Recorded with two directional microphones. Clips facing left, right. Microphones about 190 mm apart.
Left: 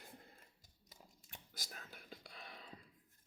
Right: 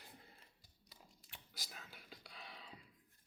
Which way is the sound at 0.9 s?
45° left (ahead or behind).